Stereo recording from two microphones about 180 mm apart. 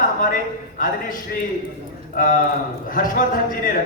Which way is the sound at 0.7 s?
50° left (ahead or behind).